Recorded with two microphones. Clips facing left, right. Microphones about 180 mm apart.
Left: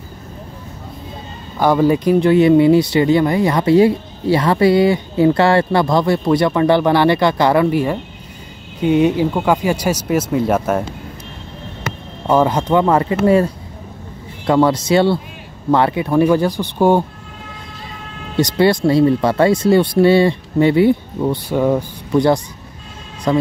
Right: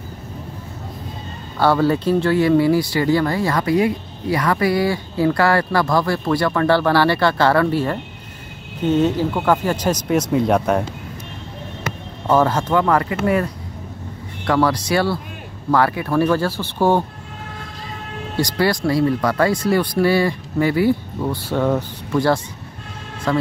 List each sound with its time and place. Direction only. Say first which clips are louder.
1.6 s speech: left 3 dB; 15° left (ahead or behind)
12.3 s speech: left 2 dB; 15° left (ahead or behind)
18.3 s speech: left 5 dB; 20° left (ahead or behind)